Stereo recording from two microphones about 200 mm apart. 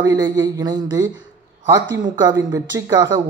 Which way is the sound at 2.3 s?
15° right (ahead or behind).